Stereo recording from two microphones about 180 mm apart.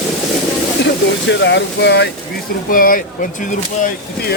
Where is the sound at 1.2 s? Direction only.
80° left.